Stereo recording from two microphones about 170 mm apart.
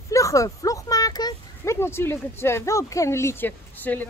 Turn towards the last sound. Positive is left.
turn(degrees=10)  # may be behind; listen again after turning